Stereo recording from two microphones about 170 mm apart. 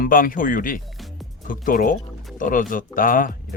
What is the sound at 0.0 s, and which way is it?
Speech, 55° left (ahead or behind).